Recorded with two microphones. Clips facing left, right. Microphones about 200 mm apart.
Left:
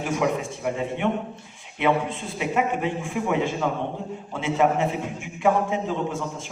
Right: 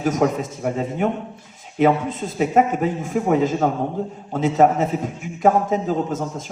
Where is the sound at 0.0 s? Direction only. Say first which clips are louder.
Right 5 dB; 40° right (ahead or behind).